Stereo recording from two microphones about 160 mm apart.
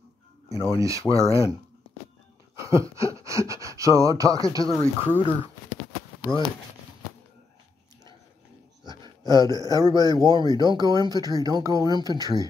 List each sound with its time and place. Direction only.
0.7 s speech: 20° right (ahead or behind)
2.6 s a sound: 20° right (ahead or behind)
3.3 s speech: 20° right (ahead or behind)
4.6 s speech: 10° left (ahead or behind)
8.8 s speech: 25° right (ahead or behind)